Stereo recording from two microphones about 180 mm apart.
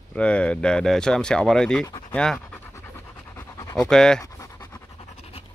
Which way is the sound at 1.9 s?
20° left (ahead or behind).